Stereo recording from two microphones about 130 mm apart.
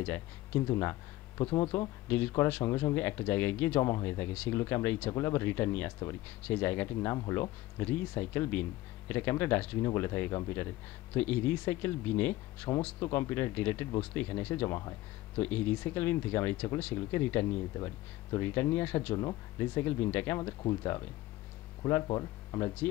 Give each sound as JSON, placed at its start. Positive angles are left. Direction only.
{"t": 0.0, "sound": "speech", "side_deg": 20}
{"t": 2.0, "sound": "speech", "side_deg": 15}
{"t": 7.8, "sound": "speech", "side_deg": 15}
{"t": 15.4, "sound": "speech", "side_deg": 15}
{"t": 19.1, "sound": "speech", "side_deg": 30}
{"t": 19.7, "sound": "speech", "side_deg": 15}